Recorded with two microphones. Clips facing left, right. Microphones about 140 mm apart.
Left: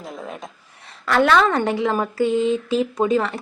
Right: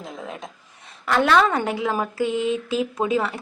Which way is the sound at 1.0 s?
10° right (ahead or behind).